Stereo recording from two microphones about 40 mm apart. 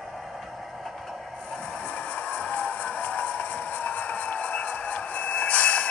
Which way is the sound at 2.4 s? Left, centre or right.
Left.